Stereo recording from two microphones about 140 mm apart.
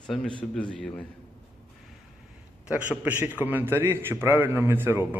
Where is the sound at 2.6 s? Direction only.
10° right (ahead or behind).